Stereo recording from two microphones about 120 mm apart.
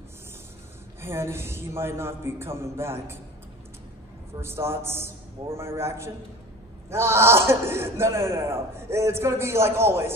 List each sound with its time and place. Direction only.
1.0 s speech: 20° right (ahead or behind)
4.4 s speech: 20° right (ahead or behind)